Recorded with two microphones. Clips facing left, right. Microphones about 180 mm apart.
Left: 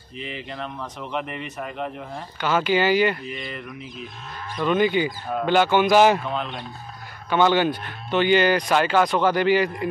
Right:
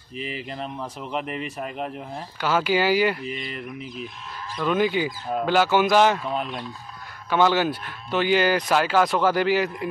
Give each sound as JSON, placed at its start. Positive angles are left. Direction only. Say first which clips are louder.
{"t": 1.1, "sound": "speech", "louder": "right 1 dB", "side_deg": 0}
{"t": 4.6, "sound": "speech", "louder": "left 2 dB", "side_deg": -5}
{"t": 7.2, "sound": "speech", "louder": "left 1 dB", "side_deg": -5}